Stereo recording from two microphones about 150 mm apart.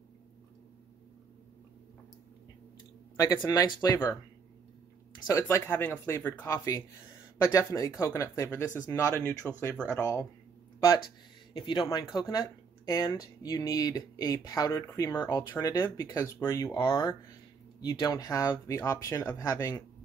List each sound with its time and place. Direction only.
3.2 s speech: 25° left (ahead or behind)
5.3 s speech: 15° left (ahead or behind)
11.5 s speech: 30° left (ahead or behind)
16.8 s speech: 35° left (ahead or behind)